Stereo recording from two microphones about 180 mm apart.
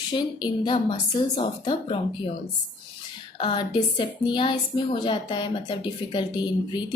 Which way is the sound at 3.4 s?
30° left (ahead or behind).